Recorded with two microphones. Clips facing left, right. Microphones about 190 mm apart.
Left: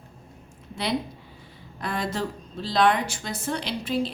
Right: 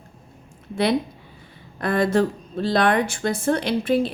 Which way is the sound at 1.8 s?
55° right (ahead or behind).